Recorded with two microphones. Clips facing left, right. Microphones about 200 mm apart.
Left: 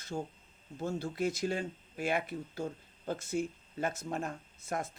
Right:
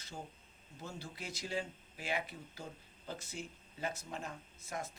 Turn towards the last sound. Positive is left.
turn(degrees=50)  # may be behind; listen again after turning